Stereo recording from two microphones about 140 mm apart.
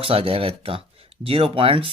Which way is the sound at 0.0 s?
45° right (ahead or behind).